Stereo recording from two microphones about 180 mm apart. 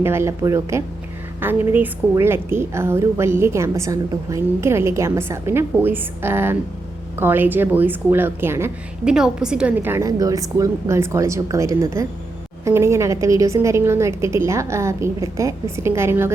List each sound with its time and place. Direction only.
0.0 s a woman's voice: 15° right (ahead or behind)